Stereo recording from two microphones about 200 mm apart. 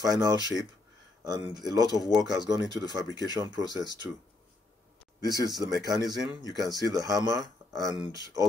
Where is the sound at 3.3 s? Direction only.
20° right (ahead or behind).